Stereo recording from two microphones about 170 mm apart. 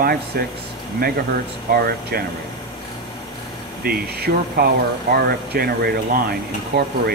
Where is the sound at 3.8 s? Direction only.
65° right (ahead or behind).